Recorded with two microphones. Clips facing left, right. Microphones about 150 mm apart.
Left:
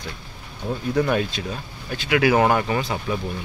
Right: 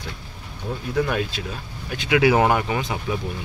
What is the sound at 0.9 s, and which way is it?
Speech, centre (ahead or behind).